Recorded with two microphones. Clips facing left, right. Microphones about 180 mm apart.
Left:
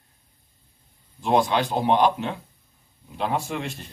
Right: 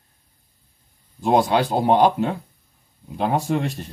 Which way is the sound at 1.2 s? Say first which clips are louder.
Right 3 dB; 40° right (ahead or behind).